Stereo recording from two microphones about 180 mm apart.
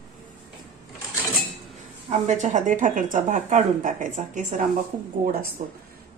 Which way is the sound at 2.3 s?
40° right (ahead or behind).